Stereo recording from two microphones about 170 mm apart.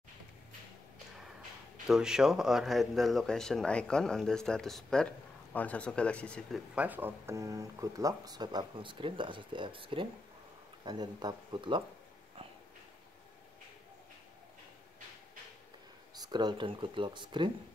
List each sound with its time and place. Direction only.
1.9 s speech: 5° right (ahead or behind)
6.7 s speech: 10° right (ahead or behind); by 11.8 s 25° right (ahead or behind)
16.2 s speech: 25° right (ahead or behind)